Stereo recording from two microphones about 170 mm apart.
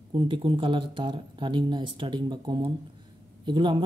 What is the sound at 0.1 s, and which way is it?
Speech, 30° right (ahead or behind).